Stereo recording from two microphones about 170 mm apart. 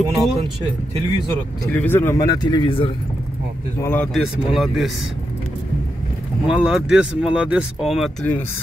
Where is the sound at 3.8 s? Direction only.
15° left (ahead or behind).